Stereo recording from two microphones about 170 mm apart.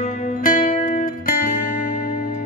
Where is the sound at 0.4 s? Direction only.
55° left (ahead or behind).